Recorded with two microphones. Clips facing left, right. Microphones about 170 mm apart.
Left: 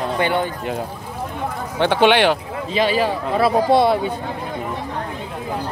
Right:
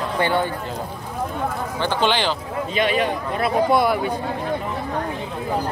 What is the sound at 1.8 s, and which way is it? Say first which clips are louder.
Speech: left 7 dB; 65° left (ahead or behind).